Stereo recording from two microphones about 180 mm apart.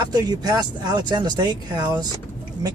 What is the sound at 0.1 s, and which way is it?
Speech, 20° right (ahead or behind).